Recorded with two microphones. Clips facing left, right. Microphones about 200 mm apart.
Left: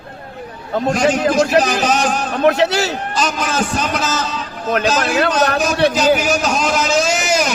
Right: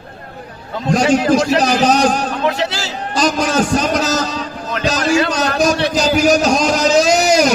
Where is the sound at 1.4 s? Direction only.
40° right (ahead or behind).